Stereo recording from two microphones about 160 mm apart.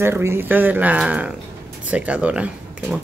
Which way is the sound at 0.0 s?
15° right (ahead or behind).